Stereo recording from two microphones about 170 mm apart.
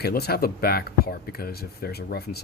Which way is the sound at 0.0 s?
65° left (ahead or behind).